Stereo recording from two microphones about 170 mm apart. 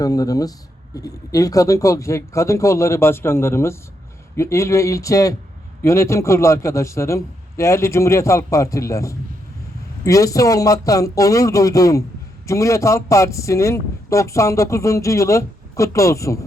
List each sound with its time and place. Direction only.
0.0 s a man's voice: 20° left (ahead or behind)